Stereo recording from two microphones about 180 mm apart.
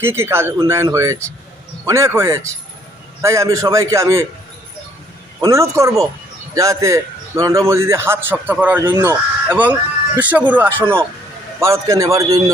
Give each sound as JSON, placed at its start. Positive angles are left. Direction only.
{"t": 0.0, "sound": "a man's voice", "side_deg": -15}
{"t": 5.4, "sound": "a man's voice", "side_deg": -15}
{"t": 8.8, "sound": "speech", "side_deg": -25}
{"t": 9.0, "sound": "a man's voice", "side_deg": -10}